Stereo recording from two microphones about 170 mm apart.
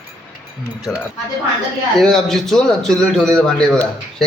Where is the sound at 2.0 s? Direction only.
5° left (ahead or behind).